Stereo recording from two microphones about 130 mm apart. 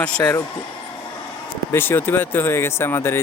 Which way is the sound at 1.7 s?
15° left (ahead or behind).